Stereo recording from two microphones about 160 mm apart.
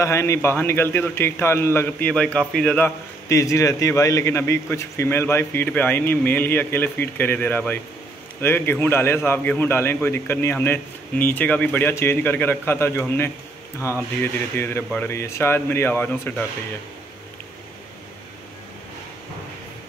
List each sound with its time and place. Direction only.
0.0 s a man's voice: 15° left (ahead or behind)
3.3 s a man's voice: 20° left (ahead or behind)